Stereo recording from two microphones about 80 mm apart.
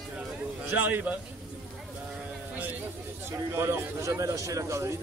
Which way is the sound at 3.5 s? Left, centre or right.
Right.